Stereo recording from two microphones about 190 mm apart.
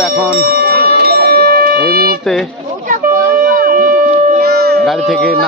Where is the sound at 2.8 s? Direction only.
45° right (ahead or behind).